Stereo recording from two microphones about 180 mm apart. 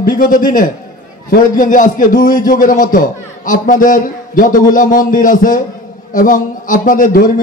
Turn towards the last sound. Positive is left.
turn(degrees=50)  # may be behind; listen again after turning